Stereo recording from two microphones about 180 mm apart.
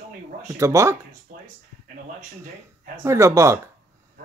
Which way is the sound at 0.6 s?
15° right (ahead or behind).